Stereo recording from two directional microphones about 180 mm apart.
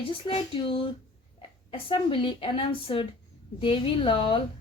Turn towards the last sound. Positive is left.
turn(degrees=30)  # may be behind; listen again after turning